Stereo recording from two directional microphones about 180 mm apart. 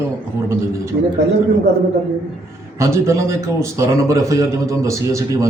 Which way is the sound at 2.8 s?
15° right (ahead or behind).